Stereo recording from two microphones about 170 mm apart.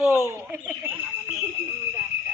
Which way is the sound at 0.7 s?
10° right (ahead or behind).